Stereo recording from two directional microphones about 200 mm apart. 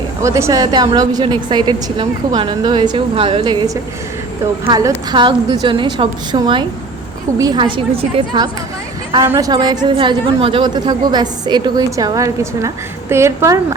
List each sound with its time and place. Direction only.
0.2 s a woman's voice: 15° right (ahead or behind)